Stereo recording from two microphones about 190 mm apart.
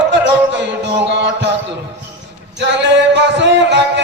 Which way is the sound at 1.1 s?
65° right (ahead or behind).